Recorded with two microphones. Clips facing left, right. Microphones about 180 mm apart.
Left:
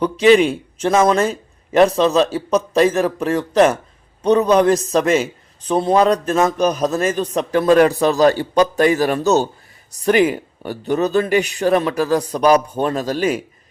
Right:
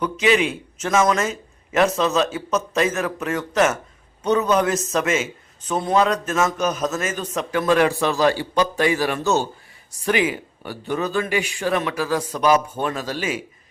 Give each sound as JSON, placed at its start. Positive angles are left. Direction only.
{"t": 0.0, "sound": "a man's voice", "side_deg": 35}